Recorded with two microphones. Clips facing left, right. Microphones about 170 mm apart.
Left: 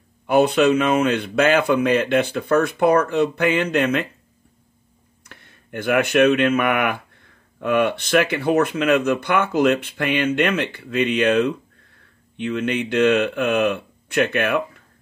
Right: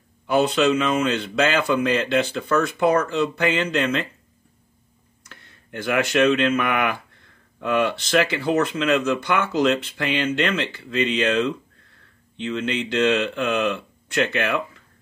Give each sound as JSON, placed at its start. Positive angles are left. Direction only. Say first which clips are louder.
{"t": 0.3, "sound": "speech", "louder": "left 3 dB", "side_deg": 60}
{"t": 5.2, "sound": "speech", "louder": "left 2 dB", "side_deg": 55}